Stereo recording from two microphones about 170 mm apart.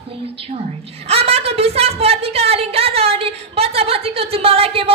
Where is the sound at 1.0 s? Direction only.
35° right (ahead or behind).